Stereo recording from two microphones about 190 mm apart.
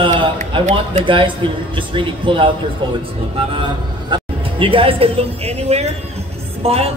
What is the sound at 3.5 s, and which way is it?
Speech, 25° right (ahead or behind).